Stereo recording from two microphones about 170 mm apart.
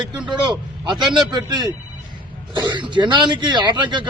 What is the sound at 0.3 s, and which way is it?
Speech, 25° right (ahead or behind).